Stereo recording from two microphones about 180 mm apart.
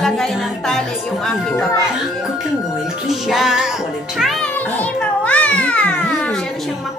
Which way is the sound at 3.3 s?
Centre (ahead or behind).